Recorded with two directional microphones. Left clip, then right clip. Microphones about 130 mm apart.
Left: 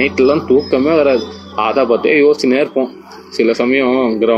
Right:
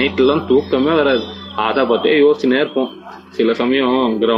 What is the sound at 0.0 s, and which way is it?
A man's voice, 20° left (ahead or behind).